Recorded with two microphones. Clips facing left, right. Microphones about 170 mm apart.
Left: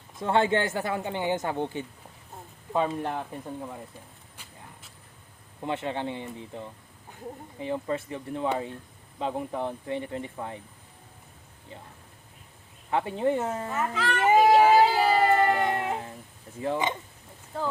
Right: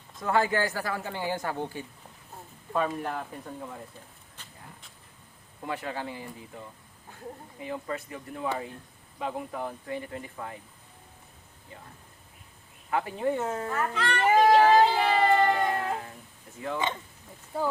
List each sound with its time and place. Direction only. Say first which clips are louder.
0.2 s speech: left 2 dB; 25° left (ahead or behind)
4.4 s vehicle: even; 10° left (ahead or behind)
5.6 s speech: left 4 dB; 25° left (ahead or behind)
12.9 s speech: left 2 dB; 25° left (ahead or behind)
13.9 s a child's voice: left 1 dB; centre (ahead or behind)
14.3 s child singing: left 1 dB; 5° left (ahead or behind)
15.6 s a sound: left 1 dB; 20° left (ahead or behind)
16.7 s speech: left 1 dB; 15° left (ahead or behind)
17.5 s speech: right 2 dB; 10° right (ahead or behind)